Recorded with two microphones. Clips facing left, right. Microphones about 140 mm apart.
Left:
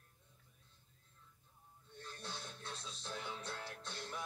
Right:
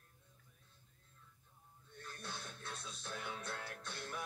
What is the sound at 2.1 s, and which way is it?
Music, 20° left (ahead or behind).